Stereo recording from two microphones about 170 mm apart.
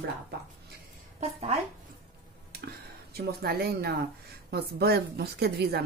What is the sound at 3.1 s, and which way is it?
A woman's voice, 65° right (ahead or behind).